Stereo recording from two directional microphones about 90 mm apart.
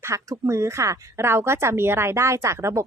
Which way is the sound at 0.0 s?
35° right (ahead or behind).